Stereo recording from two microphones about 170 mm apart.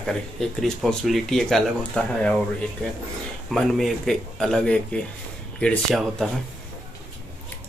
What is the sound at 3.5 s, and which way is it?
Speech, centre (ahead or behind).